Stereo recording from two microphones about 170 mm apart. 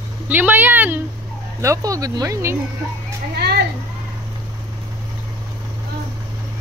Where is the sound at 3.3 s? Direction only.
70° right (ahead or behind).